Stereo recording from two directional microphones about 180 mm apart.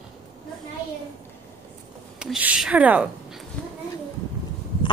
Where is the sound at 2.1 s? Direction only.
5° right (ahead or behind).